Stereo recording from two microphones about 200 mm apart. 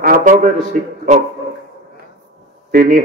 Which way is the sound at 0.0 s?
45° right (ahead or behind).